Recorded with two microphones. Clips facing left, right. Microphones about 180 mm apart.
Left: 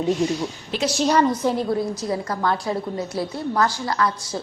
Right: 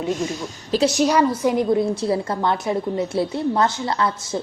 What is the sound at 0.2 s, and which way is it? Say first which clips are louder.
Speech: left 3 dB; 45° right (ahead or behind).